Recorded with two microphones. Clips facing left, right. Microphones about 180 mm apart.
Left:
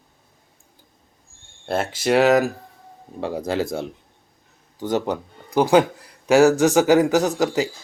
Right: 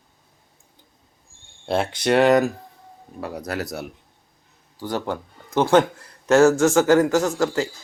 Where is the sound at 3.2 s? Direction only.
25° left (ahead or behind).